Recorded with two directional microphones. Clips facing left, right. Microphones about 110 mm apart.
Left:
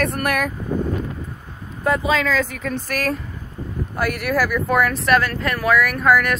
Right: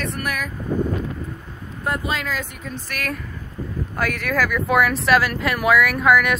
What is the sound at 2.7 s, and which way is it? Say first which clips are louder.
Speech: left 6 dB; 40° left (ahead or behind).